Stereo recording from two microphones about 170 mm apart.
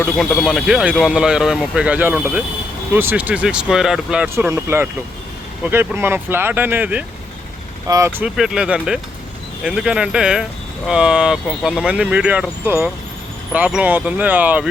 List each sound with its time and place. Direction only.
0.0 s speech: centre (ahead or behind)
7.9 s speech: 20° right (ahead or behind)
8.2 s speech: 5° right (ahead or behind)